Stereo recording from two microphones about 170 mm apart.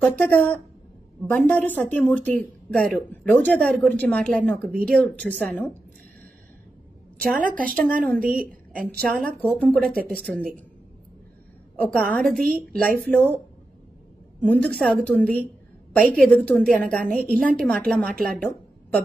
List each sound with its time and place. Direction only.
0.0 s speech: 10° left (ahead or behind)
7.3 s a woman's voice: 50° right (ahead or behind)
8.3 s a woman's voice: 5° left (ahead or behind)
11.9 s a woman's voice: centre (ahead or behind)
14.4 s a woman's voice: 10° left (ahead or behind)
18.2 s a sound: 5° left (ahead or behind)